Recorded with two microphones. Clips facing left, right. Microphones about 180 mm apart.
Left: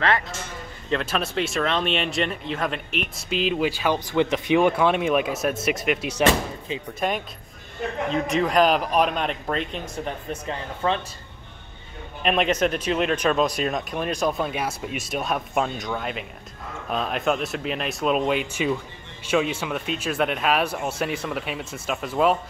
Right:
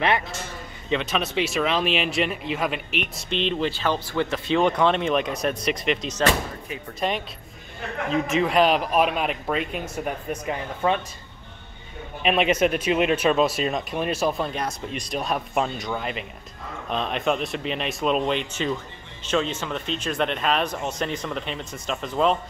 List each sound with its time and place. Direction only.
0.8 s speech: centre (ahead or behind)
6.7 s speech: 25° left (ahead or behind)
8.3 s speech: centre (ahead or behind)
12.2 s speech: 5° right (ahead or behind)